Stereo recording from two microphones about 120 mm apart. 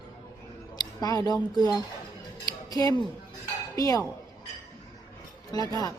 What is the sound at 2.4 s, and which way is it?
Scissors, 30° left (ahead or behind).